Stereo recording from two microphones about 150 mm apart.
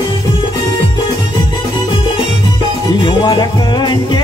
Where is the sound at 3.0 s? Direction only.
30° left (ahead or behind).